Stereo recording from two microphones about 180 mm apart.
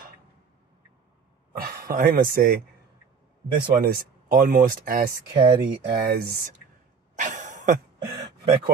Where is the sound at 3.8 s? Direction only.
60° right (ahead or behind).